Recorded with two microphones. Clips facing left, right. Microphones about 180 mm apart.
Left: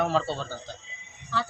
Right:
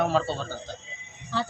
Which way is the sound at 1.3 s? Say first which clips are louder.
Right 1 dB; 25° right (ahead or behind).